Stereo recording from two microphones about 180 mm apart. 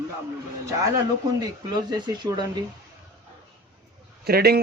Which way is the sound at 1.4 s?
20° right (ahead or behind).